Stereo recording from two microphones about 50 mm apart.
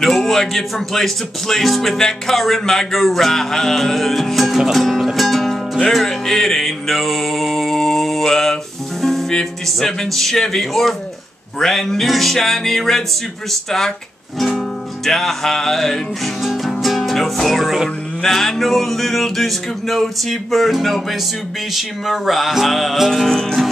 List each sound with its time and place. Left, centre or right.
0.0 s speech: centre
5.9 s music: centre
9.0 s speech: centre
13.5 s music: centre
15.0 s music: centre
18.2 s speech: centre